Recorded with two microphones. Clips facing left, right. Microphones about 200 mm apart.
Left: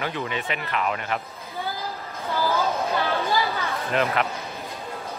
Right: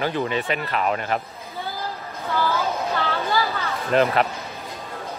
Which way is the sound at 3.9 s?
35° right (ahead or behind).